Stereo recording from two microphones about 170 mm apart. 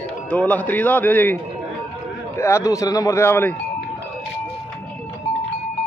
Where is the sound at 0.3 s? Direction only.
10° left (ahead or behind).